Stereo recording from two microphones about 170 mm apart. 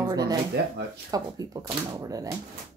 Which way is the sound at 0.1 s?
25° right (ahead or behind).